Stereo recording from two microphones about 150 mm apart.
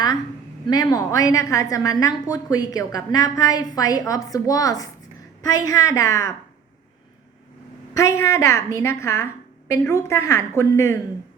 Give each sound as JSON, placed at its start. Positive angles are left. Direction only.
{"t": 0.7, "sound": "a woman's voice", "side_deg": 25}
{"t": 7.9, "sound": "a woman's voice", "side_deg": 20}